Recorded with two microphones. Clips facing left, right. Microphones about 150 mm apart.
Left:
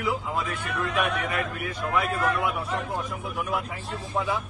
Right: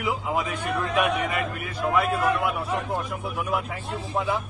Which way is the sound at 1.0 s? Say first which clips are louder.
Right 3 dB; centre (ahead or behind).